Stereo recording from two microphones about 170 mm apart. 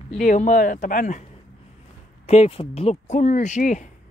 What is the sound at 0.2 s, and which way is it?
Speech, 50° left (ahead or behind).